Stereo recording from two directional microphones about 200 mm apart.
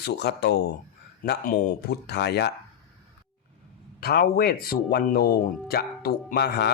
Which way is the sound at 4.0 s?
50° left (ahead or behind).